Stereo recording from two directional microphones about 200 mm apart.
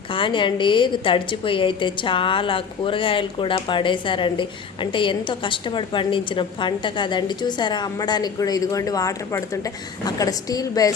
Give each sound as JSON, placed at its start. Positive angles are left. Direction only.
{"t": 0.1, "sound": "a woman's voice", "side_deg": 25}